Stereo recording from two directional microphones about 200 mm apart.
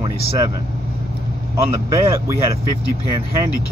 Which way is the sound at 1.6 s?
15° right (ahead or behind).